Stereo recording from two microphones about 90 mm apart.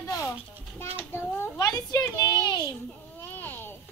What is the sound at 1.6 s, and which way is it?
Speech, 40° left (ahead or behind).